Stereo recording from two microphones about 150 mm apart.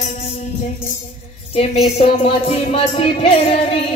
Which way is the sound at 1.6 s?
45° left (ahead or behind).